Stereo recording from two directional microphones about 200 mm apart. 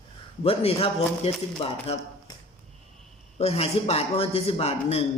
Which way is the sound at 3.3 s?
30° left (ahead or behind).